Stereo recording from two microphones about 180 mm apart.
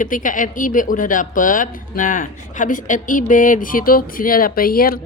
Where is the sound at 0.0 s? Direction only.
45° left (ahead or behind).